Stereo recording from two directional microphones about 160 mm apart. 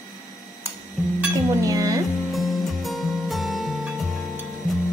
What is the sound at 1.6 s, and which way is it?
Music, 20° right (ahead or behind).